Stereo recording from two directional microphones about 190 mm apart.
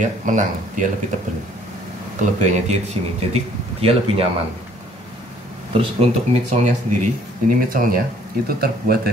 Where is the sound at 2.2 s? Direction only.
40° right (ahead or behind).